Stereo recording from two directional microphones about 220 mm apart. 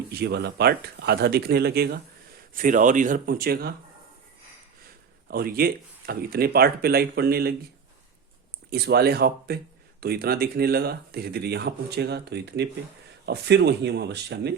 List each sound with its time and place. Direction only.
0.1 s speech: 50° right (ahead or behind)
5.3 s speech: 45° right (ahead or behind)
8.7 s speech: 45° right (ahead or behind)